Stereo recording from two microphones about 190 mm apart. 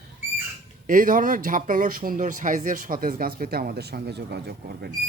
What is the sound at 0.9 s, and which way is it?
A man's voice, 45° right (ahead or behind).